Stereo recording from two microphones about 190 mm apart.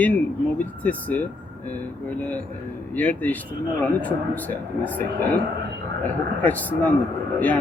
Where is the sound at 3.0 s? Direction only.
10° left (ahead or behind).